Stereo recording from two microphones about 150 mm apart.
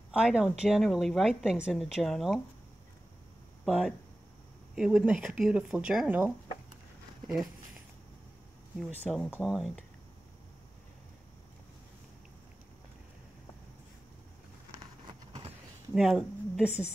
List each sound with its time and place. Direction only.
0.1 s a woman's voice: 5° right (ahead or behind)
3.6 s a woman's voice: centre (ahead or behind)
8.7 s a woman's voice: centre (ahead or behind)
15.9 s a woman's voice: centre (ahead or behind)